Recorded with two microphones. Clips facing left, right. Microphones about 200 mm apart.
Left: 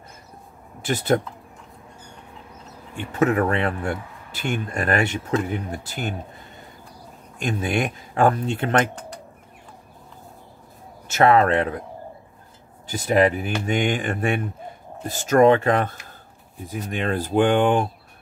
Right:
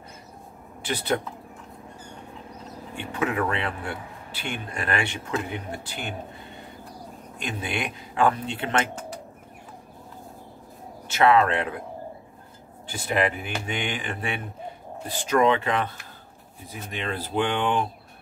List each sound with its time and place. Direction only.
0.8 s a man's voice: 45° left (ahead or behind)
3.1 s a man's voice: 45° left (ahead or behind)
7.3 s a man's voice: 45° left (ahead or behind)
11.1 s a man's voice: 45° left (ahead or behind)
12.8 s a man's voice: 40° left (ahead or behind)